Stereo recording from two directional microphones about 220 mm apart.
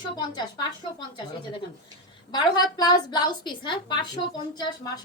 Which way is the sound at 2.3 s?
20° left (ahead or behind).